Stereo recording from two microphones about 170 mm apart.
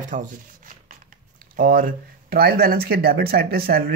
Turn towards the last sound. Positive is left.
turn(degrees=-65)  # may be behind; listen again after turning